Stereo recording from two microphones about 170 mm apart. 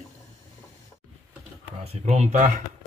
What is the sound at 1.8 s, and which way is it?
Speech, 40° right (ahead or behind).